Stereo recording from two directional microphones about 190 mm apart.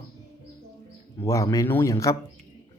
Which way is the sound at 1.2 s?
15° left (ahead or behind).